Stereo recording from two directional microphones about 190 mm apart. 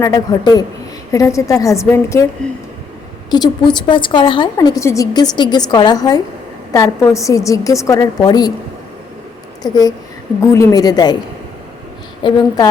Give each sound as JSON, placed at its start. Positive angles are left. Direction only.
{"t": 0.0, "sound": "a woman's voice", "side_deg": 20}
{"t": 2.4, "sound": "speech", "side_deg": 5}
{"t": 3.2, "sound": "a woman's voice", "side_deg": 20}
{"t": 9.6, "sound": "a woman's voice", "side_deg": 20}
{"t": 12.2, "sound": "a woman's voice", "side_deg": 25}